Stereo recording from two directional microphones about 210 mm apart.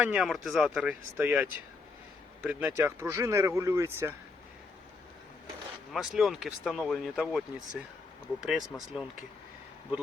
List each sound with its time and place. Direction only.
0.0 s speech: 5° right (ahead or behind)
5.9 s speech: centre (ahead or behind)